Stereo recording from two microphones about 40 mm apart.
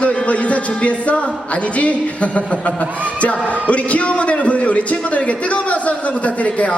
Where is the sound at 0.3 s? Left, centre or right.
Left.